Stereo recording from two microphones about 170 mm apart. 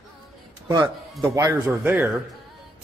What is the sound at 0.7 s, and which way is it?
A man's voice, 20° right (ahead or behind).